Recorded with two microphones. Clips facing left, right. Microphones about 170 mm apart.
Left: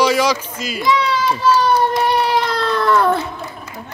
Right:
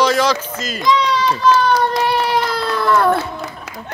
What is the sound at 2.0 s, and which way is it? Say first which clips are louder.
Baby cry: left 1 dB; centre (ahead or behind).